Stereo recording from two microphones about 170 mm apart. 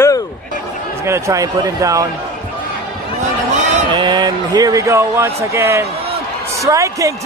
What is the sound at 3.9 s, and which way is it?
A man's voice, 25° right (ahead or behind).